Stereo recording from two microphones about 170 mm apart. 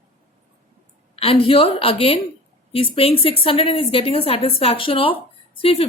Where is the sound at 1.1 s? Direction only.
35° left (ahead or behind).